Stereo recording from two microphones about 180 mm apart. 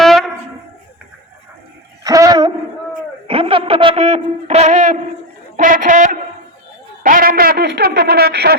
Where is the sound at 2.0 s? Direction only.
20° right (ahead or behind); by 8.5 s 65° right (ahead or behind).